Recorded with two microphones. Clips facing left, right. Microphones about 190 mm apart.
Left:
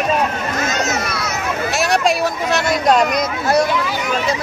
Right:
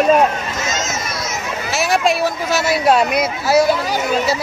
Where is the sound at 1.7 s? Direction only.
Centre (ahead or behind).